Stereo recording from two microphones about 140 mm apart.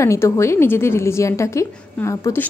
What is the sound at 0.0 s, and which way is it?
A woman's voice, 20° left (ahead or behind).